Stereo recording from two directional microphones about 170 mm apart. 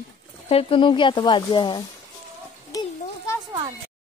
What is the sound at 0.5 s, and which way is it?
Speech, 30° left (ahead or behind).